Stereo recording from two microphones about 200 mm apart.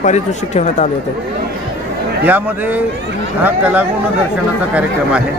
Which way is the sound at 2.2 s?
10° right (ahead or behind).